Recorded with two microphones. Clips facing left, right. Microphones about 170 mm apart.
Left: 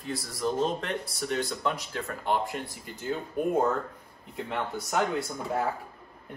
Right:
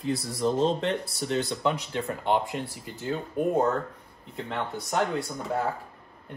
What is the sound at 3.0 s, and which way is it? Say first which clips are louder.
Speech: right 2 dB; centre (ahead or behind).